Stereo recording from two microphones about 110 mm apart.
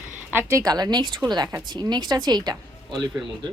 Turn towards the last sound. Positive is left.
turn(degrees=-40)  # may be behind; listen again after turning